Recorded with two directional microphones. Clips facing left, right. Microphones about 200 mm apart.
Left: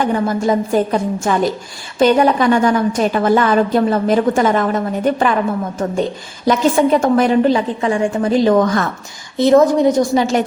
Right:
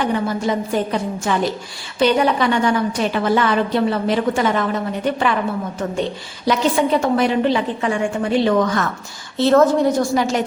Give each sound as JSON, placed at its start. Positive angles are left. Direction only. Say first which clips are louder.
{"t": 0.0, "sound": "a woman's voice", "louder": "left 3 dB", "side_deg": 45}
{"t": 9.4, "sound": "a woman's voice", "louder": "left 3 dB", "side_deg": 15}